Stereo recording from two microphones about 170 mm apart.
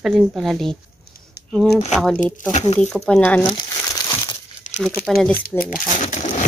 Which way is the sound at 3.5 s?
25° left (ahead or behind).